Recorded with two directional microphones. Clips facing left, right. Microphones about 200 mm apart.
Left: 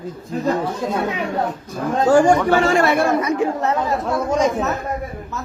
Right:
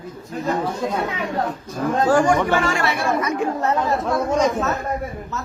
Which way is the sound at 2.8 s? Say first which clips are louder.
Left 6 dB; 50° left (ahead or behind).